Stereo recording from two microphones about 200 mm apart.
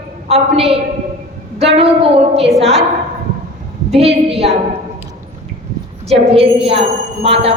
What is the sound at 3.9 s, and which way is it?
Speech, 30° right (ahead or behind).